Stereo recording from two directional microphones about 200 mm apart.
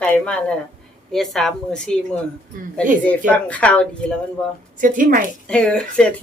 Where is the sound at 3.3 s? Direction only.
5° left (ahead or behind).